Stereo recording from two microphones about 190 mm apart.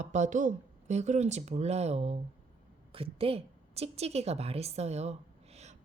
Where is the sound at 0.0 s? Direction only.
40° right (ahead or behind).